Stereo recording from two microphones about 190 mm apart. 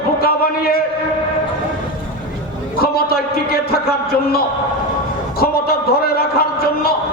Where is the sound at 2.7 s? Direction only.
55° left (ahead or behind).